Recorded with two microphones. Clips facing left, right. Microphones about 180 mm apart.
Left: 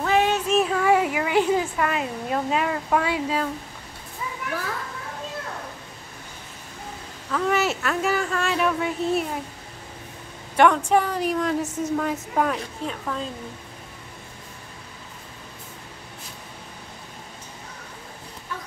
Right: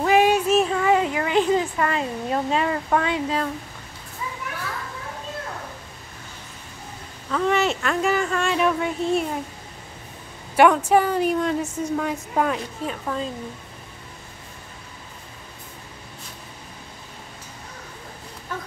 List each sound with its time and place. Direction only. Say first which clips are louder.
0.0 s child singing: right 4 dB; 10° right (ahead or behind)
0.6 s a sound: right 1 dB; centre (ahead or behind)
0.8 s a woman's voice: even; 10° left (ahead or behind)
7.2 s a woman's voice: right 2 dB; centre (ahead or behind)
10.5 s a woman's voice: right 2 dB; 5° right (ahead or behind)